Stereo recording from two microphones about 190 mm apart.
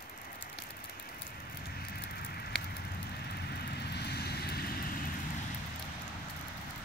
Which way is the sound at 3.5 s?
60° left (ahead or behind).